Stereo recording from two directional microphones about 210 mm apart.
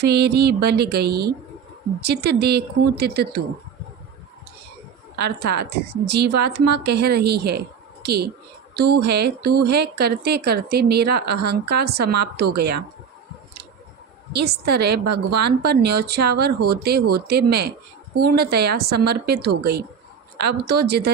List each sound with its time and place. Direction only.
0.0 s a woman's voice: 50° right (ahead or behind)
5.4 s a woman's voice: 50° right (ahead or behind)
14.3 s a woman's voice: 50° right (ahead or behind)